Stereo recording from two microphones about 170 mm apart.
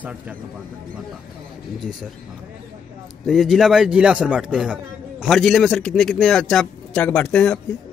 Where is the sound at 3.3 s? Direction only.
Centre (ahead or behind).